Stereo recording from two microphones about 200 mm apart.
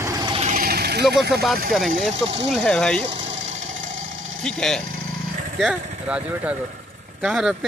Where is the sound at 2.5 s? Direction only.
5° left (ahead or behind).